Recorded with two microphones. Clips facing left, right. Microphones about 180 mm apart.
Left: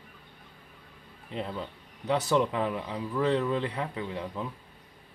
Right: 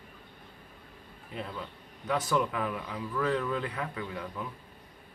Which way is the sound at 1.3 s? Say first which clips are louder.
Left 4 dB; 25° left (ahead or behind).